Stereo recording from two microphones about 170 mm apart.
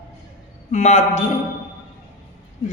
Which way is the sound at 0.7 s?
45° left (ahead or behind).